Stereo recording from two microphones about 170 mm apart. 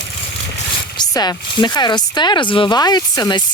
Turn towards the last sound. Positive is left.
turn(degrees=25)  # may be behind; listen again after turning